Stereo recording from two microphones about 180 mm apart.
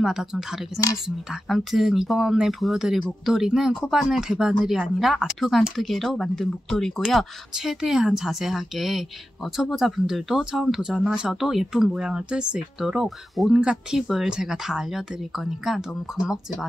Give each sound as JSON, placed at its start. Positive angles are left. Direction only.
{"t": 0.0, "sound": "speech", "side_deg": 0}